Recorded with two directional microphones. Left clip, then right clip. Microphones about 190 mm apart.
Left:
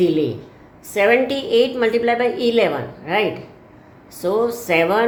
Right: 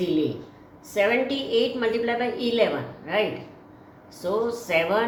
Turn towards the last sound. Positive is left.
turn(degrees=60)  # may be behind; listen again after turning